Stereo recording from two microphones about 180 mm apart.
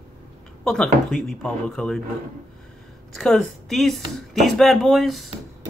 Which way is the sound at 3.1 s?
Centre (ahead or behind).